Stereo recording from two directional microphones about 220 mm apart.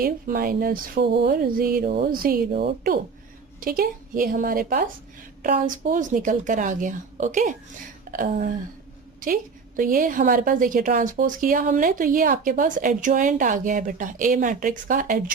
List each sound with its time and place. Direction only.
0.0 s a woman's voice: 40° right (ahead or behind)